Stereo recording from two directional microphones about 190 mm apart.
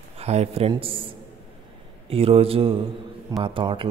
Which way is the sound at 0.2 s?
35° right (ahead or behind).